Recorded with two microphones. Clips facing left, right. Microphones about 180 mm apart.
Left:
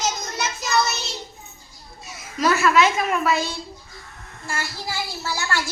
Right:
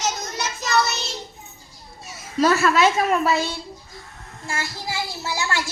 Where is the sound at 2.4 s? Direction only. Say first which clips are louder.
Right 1 dB; 35° right (ahead or behind).